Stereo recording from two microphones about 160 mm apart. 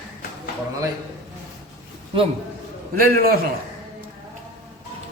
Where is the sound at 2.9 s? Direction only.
70° right (ahead or behind).